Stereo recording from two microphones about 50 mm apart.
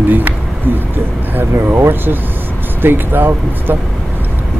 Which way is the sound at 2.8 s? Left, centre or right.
Right.